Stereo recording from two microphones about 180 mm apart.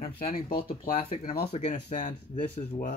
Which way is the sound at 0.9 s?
30° left (ahead or behind).